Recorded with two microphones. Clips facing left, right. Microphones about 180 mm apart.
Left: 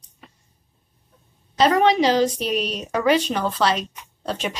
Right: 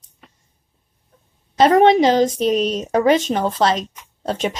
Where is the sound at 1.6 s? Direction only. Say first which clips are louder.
Right 5 dB; 50° right (ahead or behind).